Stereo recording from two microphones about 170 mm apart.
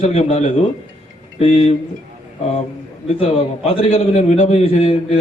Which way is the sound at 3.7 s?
35° left (ahead or behind).